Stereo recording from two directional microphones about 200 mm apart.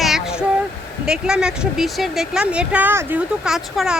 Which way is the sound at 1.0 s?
5° right (ahead or behind).